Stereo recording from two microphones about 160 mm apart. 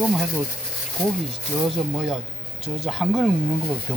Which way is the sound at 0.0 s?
5° right (ahead or behind).